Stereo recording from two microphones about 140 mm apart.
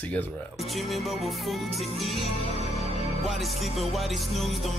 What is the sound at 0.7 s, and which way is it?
Music, centre (ahead or behind).